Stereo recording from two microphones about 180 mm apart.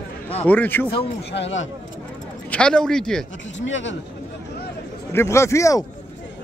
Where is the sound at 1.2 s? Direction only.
80° left.